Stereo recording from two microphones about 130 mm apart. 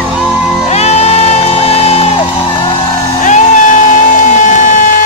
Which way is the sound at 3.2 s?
70° left (ahead or behind).